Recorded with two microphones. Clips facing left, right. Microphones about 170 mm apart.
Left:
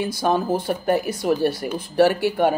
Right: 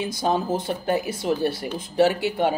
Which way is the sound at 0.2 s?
60° left (ahead or behind).